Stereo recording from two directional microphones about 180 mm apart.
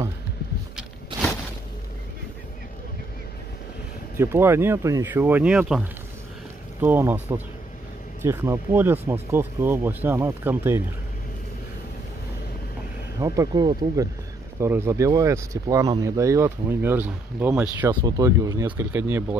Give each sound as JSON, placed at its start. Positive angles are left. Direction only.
{"t": 4.2, "sound": "speech", "side_deg": -15}
{"t": 13.2, "sound": "speech", "side_deg": -20}